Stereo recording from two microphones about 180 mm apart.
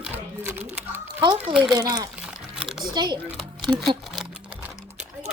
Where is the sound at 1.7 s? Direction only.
20° right (ahead or behind).